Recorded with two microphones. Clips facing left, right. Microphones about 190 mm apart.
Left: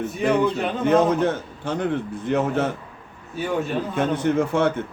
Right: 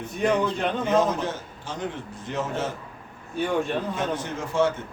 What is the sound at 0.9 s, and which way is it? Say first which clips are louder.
A man's voice: left 7 dB; 60° left (ahead or behind).